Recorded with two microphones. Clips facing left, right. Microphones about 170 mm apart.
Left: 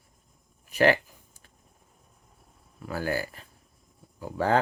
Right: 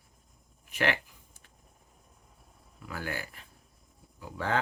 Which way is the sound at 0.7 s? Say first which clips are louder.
Left 8 dB; 40° left (ahead or behind).